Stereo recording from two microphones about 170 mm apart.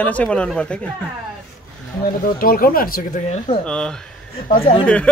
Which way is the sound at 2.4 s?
60° left (ahead or behind).